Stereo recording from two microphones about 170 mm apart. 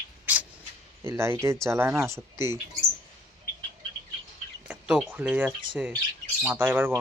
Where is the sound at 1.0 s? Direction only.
15° right (ahead or behind).